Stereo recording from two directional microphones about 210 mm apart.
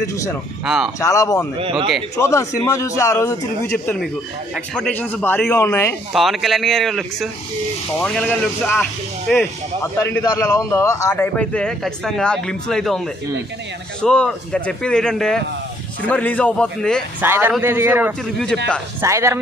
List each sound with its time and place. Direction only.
0.0 s a man's voice: 15° left (ahead or behind)
0.7 s a man's voice: centre (ahead or behind)
0.9 s a man's voice: 15° left (ahead or behind)
1.6 s speech: 25° right (ahead or behind)
2.1 s a man's voice: 15° left (ahead or behind)
6.1 s a man's voice: centre (ahead or behind)
14.0 s a man's voice: 5° left (ahead or behind)
17.2 s a man's voice: 10° right (ahead or behind)